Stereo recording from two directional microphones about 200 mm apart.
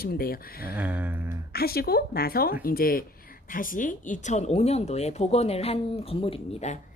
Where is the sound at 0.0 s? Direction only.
50° left (ahead or behind).